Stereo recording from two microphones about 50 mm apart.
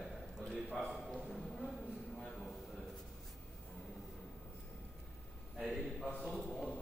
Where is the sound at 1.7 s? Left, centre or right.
Centre.